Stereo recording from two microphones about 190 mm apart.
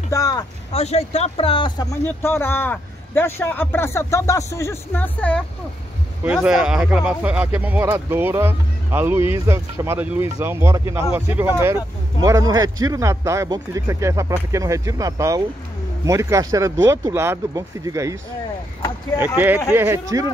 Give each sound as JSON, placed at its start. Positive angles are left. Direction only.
{"t": 0.1, "sound": "vehicle", "side_deg": 20}
{"t": 0.7, "sound": "speech", "side_deg": 35}
{"t": 6.2, "sound": "speech", "side_deg": -5}
{"t": 19.1, "sound": "speech", "side_deg": -10}